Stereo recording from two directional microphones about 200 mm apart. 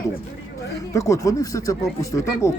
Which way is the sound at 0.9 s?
15° left (ahead or behind).